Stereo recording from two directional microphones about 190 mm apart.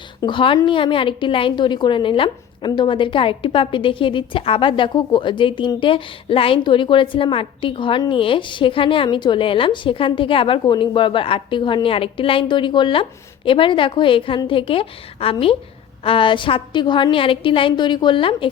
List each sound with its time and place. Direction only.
0.2 s a woman's voice: 25° left (ahead or behind)